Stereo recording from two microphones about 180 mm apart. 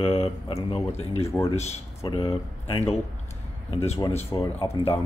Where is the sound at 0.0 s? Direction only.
30° left (ahead or behind).